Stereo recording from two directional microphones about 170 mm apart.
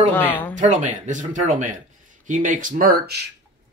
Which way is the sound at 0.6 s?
45° right (ahead or behind).